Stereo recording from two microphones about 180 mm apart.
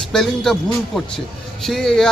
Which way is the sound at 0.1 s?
Centre (ahead or behind).